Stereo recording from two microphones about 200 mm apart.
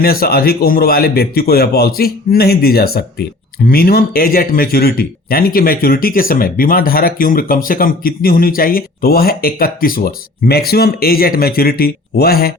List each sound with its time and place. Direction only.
0.0 s a man's voice: 50° left (ahead or behind)